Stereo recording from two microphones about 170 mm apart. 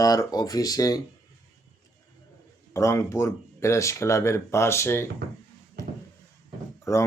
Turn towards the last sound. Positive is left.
turn(degrees=15)  # may be behind; listen again after turning